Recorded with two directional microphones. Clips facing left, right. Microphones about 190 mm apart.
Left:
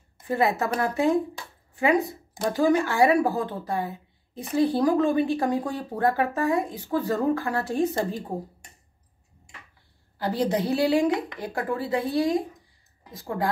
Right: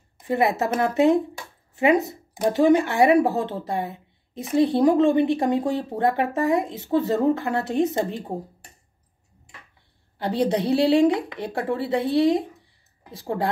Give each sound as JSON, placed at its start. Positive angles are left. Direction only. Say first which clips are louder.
{"t": 0.3, "sound": "speech", "louder": "right 2 dB", "side_deg": -20}
{"t": 10.1, "sound": "speech", "louder": "right 2 dB", "side_deg": -25}